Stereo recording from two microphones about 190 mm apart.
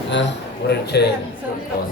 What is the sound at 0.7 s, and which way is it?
Speech, 60° left (ahead or behind).